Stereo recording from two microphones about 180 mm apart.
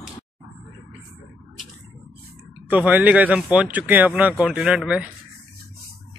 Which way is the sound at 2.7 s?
10° right (ahead or behind).